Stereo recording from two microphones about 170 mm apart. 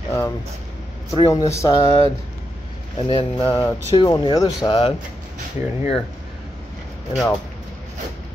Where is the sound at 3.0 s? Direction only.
35° left (ahead or behind).